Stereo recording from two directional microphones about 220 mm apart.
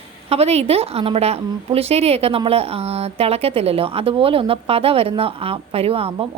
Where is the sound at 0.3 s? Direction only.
30° right (ahead or behind).